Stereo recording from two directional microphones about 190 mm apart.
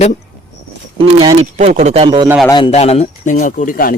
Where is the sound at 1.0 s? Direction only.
25° right (ahead or behind).